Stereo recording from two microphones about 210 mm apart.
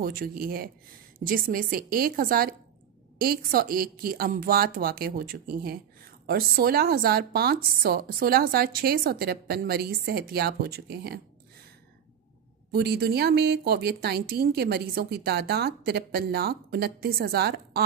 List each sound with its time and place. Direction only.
0.0 s a woman's voice: 45° right (ahead or behind)
12.7 s a woman's voice: 50° right (ahead or behind)